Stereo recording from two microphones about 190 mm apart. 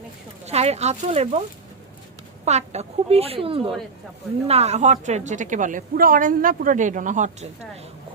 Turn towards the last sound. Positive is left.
turn(degrees=-40)  # may be behind; listen again after turning